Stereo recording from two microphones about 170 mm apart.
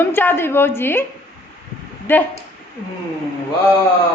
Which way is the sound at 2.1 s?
10° left (ahead or behind).